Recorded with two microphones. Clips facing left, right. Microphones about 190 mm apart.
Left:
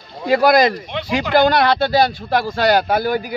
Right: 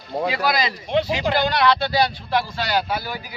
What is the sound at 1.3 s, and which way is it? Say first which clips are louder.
A man's voice: left 6 dB; 45° left (ahead or behind).